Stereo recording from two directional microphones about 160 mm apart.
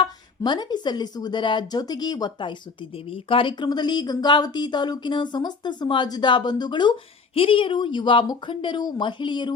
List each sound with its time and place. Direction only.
0.0 s speech: 30° left (ahead or behind)